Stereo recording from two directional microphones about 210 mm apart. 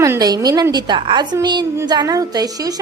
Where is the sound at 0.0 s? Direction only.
15° right (ahead or behind).